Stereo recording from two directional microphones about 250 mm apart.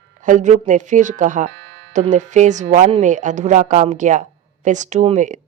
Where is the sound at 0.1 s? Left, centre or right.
Right.